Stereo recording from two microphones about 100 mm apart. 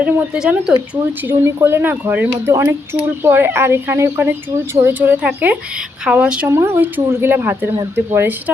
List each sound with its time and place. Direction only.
0.0 s a woman's voice: 20° right (ahead or behind)
0.3 s speech: 5° right (ahead or behind)
1.3 s a woman's voice: 25° right (ahead or behind)
6.5 s a woman's voice: 25° right (ahead or behind)